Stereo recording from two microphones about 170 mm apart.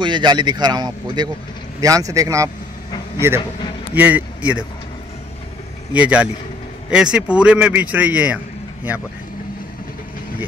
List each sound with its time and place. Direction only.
0.0 s a man's voice: 25° right (ahead or behind); by 4.6 s 10° right (ahead or behind)
5.9 s a man's voice: 10° right (ahead or behind)